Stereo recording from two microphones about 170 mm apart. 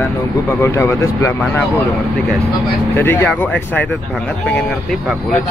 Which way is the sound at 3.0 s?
15° left (ahead or behind).